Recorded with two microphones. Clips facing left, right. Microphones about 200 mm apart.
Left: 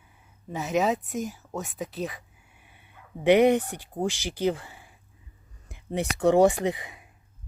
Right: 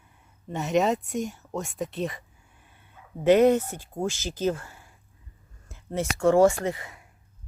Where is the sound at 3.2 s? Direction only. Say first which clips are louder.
Right 1 dB; 15° left (ahead or behind).